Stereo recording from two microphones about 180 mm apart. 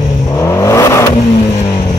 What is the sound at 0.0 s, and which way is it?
Vehicle, 20° left (ahead or behind).